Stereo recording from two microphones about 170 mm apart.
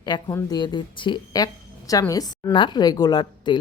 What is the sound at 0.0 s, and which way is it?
A woman's voice, 25° left (ahead or behind).